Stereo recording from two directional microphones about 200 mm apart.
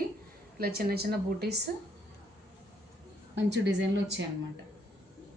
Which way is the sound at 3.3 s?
60° right (ahead or behind).